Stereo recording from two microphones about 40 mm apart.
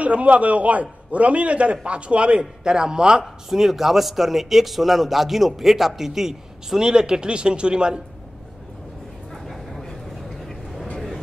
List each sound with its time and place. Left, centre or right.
0.0 s a man's voice: right; by 3.3 s centre
3.4 s speech: centre; by 8.0 s right
9.3 s bow-wow: centre
10.4 s vehicle: centre